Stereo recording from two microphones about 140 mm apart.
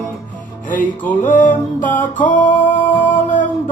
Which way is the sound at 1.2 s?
70° left (ahead or behind).